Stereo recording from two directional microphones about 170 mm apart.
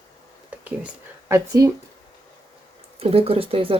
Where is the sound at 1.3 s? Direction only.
15° right (ahead or behind).